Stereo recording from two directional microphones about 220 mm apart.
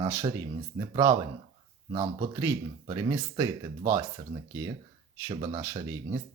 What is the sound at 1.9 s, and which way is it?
Speech, 30° right (ahead or behind).